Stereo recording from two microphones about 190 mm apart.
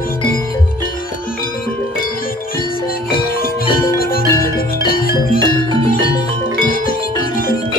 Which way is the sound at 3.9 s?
50° left (ahead or behind).